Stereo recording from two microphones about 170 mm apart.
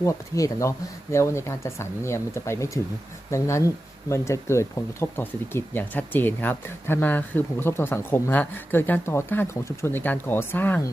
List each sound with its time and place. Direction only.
0.0 s speech: 20° left (ahead or behind)